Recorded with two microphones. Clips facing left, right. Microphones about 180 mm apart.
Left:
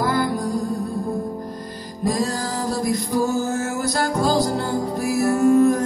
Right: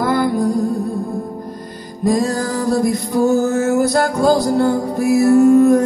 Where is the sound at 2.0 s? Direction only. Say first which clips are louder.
Right 6 dB; 55° right (ahead or behind).